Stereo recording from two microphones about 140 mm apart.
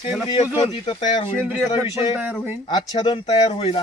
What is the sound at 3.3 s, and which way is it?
Speech, 45° left (ahead or behind).